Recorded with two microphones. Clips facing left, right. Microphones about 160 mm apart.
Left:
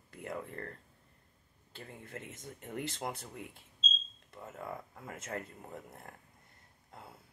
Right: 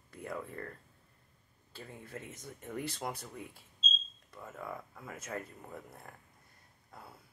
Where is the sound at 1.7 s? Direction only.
20° left (ahead or behind).